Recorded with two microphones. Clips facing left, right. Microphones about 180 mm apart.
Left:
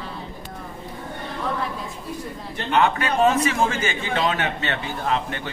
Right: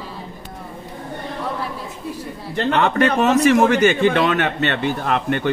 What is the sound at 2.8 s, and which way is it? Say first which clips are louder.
A man's voice: right 1 dB; 70° right (ahead or behind).